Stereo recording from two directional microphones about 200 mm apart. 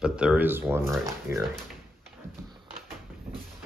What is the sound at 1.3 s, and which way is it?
Speech, 10° right (ahead or behind).